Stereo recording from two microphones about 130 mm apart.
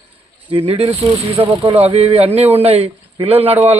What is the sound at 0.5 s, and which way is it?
Speech, 45° right (ahead or behind).